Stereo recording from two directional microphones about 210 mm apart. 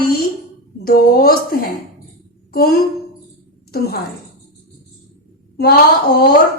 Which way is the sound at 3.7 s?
50° left (ahead or behind).